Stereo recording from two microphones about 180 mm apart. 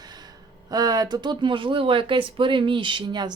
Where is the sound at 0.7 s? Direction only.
20° right (ahead or behind).